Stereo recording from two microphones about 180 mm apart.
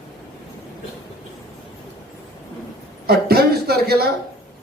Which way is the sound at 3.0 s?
60° right (ahead or behind).